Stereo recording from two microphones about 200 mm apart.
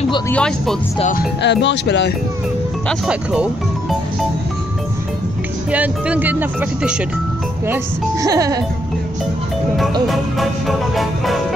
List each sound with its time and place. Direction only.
0.3 s music: 5° left (ahead or behind)
1.1 s speech: 60° left (ahead or behind)
2.9 s music: 5° right (ahead or behind)
5.7 s speech: 5° right (ahead or behind)
10.0 s music: centre (ahead or behind)